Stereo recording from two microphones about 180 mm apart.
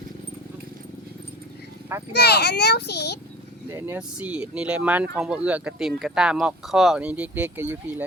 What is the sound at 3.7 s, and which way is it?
Speech, 10° right (ahead or behind).